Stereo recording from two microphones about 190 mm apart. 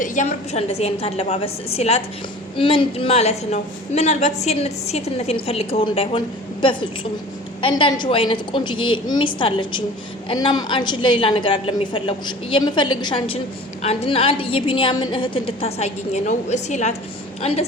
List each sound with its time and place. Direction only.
0.0 s a woman's voice: 40° left (ahead or behind)